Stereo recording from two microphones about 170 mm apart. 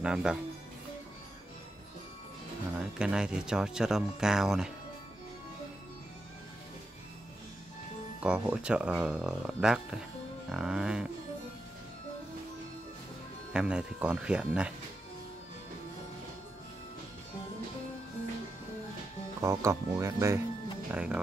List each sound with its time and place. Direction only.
0.0 s speech: 5° right (ahead or behind)
2.8 s speech: 5° right (ahead or behind)
8.2 s speech: 5° right (ahead or behind)
13.5 s speech: 5° right (ahead or behind)
19.4 s speech: 20° right (ahead or behind)
20.9 s speech: 5° right (ahead or behind)